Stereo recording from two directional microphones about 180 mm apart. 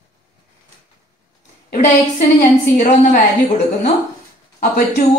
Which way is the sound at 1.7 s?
45° left (ahead or behind).